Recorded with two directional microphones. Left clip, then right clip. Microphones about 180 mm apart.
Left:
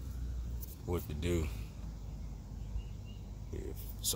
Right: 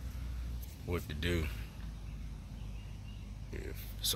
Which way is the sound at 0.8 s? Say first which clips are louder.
Even; 10° left (ahead or behind).